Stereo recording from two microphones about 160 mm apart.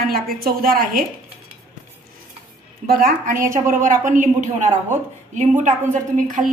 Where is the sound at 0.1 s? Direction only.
70° right (ahead or behind).